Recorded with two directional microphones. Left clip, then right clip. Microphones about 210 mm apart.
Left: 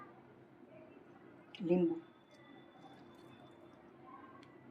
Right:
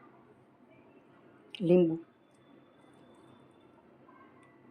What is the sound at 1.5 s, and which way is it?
Speech, 50° right (ahead or behind).